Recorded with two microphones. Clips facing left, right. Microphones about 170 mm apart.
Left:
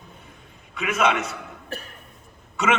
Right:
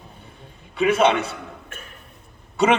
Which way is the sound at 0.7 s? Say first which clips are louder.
Right 5 dB; 30° right (ahead or behind).